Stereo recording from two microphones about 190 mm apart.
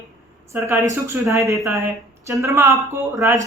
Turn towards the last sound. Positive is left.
turn(degrees=-15)  # may be behind; listen again after turning